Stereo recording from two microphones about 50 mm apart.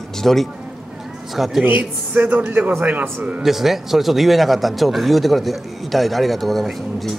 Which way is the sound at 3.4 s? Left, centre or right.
Centre.